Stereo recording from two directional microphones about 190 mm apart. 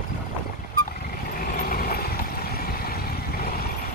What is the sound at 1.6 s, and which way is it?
Vehicle, 50° left (ahead or behind).